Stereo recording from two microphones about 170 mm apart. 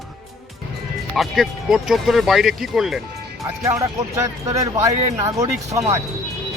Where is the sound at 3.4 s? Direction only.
20° right (ahead or behind).